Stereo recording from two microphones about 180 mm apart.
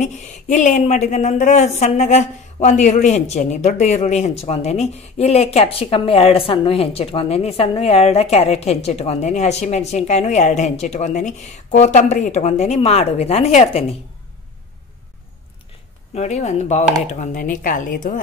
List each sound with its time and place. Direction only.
0.0 s a woman's voice: 45° left (ahead or behind)
16.2 s a woman's voice: 40° left (ahead or behind)